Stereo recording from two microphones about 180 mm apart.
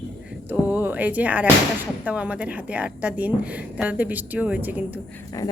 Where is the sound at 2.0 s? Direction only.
5° right (ahead or behind).